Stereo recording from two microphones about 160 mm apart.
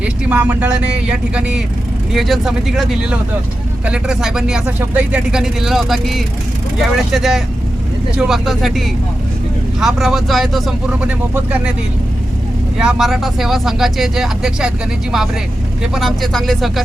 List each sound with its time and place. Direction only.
0.0 s speech: 10° right (ahead or behind)
12.8 s speech: centre (ahead or behind)
16.0 s speech: centre (ahead or behind)